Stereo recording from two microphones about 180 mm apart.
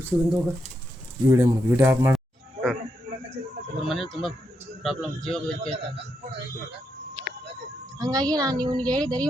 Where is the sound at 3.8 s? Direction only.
Centre (ahead or behind).